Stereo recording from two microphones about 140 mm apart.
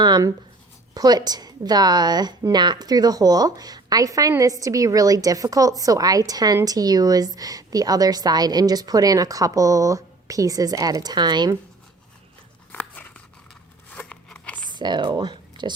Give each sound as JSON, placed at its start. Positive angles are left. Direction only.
{"t": 0.0, "sound": "a woman's voice", "side_deg": -25}
{"t": 12.7, "sound": "crunch", "side_deg": 10}
{"t": 13.9, "sound": "a sound", "side_deg": 10}
{"t": 14.7, "sound": "speech", "side_deg": -30}